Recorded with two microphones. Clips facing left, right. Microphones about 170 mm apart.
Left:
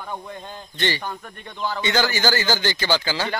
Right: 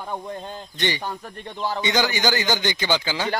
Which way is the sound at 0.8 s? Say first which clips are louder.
Even; 15° right (ahead or behind).